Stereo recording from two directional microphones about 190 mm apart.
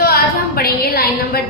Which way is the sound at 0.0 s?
50° left (ahead or behind).